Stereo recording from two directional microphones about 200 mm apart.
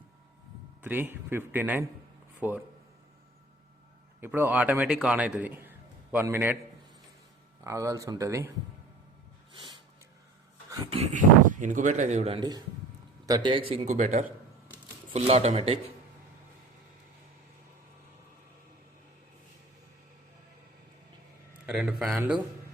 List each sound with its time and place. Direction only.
0.8 s speech: 10° right (ahead or behind)
4.2 s a man's voice: 10° right (ahead or behind)
7.6 s speech: 15° right (ahead or behind)
10.9 s a man's voice: 35° right (ahead or behind)
21.7 s a man's voice: 5° right (ahead or behind)